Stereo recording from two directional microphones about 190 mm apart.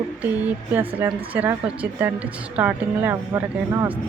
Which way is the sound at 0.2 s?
10° right (ahead or behind).